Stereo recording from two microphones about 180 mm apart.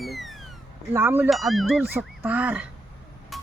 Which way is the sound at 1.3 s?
Centre (ahead or behind).